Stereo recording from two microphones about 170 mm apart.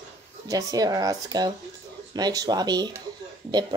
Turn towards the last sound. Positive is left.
turn(degrees=-25)  # may be behind; listen again after turning